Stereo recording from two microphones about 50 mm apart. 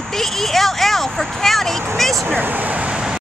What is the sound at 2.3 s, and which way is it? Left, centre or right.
Speech, right.